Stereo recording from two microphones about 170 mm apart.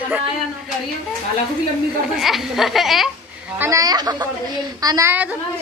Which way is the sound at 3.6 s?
20° right (ahead or behind).